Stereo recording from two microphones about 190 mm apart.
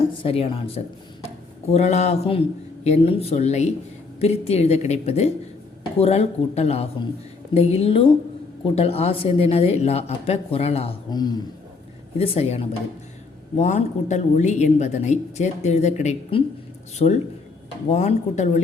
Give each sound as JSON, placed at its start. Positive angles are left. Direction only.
{"t": 0.1, "sound": "speech", "side_deg": 30}